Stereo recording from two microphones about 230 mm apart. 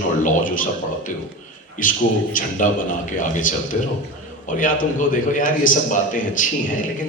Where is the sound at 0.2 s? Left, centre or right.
Left.